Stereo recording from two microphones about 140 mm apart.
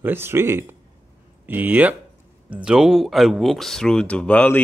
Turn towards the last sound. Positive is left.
turn(degrees=10)  # may be behind; listen again after turning